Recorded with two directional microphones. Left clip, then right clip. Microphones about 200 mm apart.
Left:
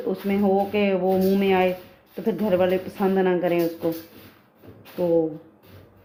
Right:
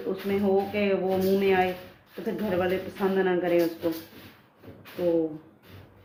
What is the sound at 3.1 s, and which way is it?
Speech, 45° left (ahead or behind).